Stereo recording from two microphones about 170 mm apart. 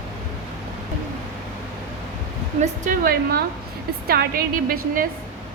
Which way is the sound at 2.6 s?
55° right (ahead or behind).